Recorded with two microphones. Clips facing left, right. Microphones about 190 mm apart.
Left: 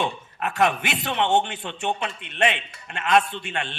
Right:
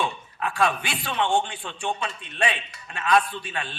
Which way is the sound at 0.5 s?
20° left (ahead or behind).